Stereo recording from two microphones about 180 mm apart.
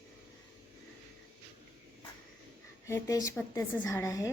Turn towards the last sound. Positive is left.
turn(degrees=20)  # may be behind; listen again after turning